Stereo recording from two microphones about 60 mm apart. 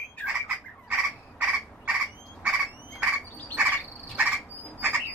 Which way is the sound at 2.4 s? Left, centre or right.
Centre.